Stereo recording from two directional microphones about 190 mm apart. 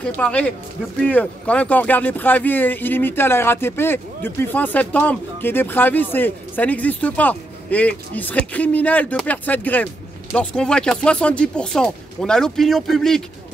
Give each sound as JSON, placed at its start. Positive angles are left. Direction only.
{"t": 0.0, "sound": "speech", "side_deg": 5}